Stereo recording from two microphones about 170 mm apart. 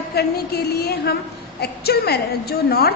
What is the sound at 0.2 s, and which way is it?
A woman's voice, 70° left (ahead or behind).